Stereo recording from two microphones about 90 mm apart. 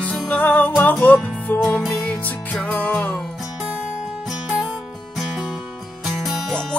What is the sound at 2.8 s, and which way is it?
Music, 20° left (ahead or behind).